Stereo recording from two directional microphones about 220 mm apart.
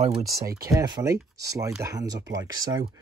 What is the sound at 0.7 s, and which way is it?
Speech, 15° right (ahead or behind).